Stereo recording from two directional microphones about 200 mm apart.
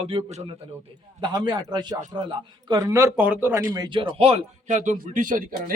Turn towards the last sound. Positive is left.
turn(degrees=-45)  # may be behind; listen again after turning